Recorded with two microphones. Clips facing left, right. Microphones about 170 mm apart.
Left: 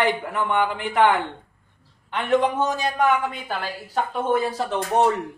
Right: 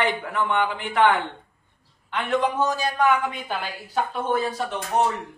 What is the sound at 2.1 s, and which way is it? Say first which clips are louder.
Speech: left 3 dB; 15° left (ahead or behind).